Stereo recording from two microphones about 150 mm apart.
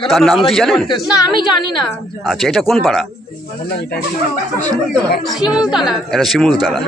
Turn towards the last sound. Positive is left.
turn(degrees=0)  # may be behind; listen again after turning